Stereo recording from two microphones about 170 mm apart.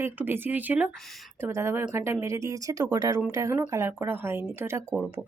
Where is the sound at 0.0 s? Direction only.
10° right (ahead or behind).